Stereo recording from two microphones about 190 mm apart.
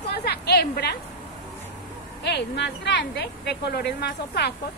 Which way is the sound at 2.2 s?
65° left (ahead or behind).